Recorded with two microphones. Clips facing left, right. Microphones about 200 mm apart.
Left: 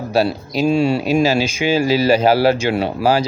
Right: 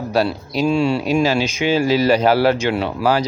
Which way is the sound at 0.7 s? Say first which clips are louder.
Left 2 dB; 40° left (ahead or behind).